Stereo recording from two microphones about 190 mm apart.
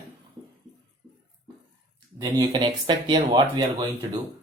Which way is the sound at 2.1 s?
20° right (ahead or behind).